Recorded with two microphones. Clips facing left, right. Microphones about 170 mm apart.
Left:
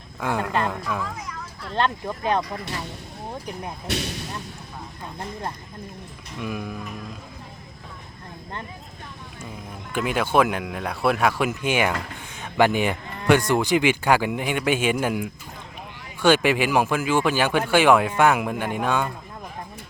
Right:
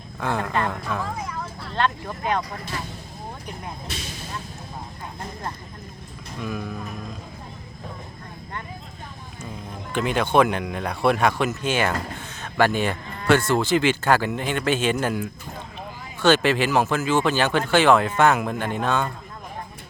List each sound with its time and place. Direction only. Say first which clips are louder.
0.2 s speech: even; 10° left (ahead or behind)
1.7 s speech: left 1 dB; 25° left (ahead or behind)
3.8 s speech: left 7 dB; 65° left (ahead or behind)
6.4 s speech: even; 10° left (ahead or behind)
9.9 s speech: right 1 dB; 5° left (ahead or behind)